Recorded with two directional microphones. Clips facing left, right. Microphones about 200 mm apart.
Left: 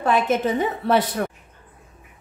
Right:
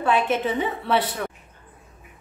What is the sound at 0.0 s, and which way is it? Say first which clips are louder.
A woman's voice: left 2 dB; 40° left (ahead or behind).